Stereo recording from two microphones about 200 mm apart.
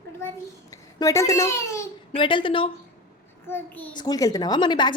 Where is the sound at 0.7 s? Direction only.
15° left (ahead or behind).